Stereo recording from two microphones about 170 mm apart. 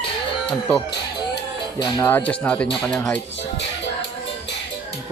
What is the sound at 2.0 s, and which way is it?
Speech, 10° left (ahead or behind).